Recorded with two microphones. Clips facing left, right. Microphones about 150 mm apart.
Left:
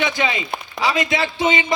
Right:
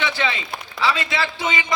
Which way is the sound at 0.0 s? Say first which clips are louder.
Left 3 dB; 15° left (ahead or behind).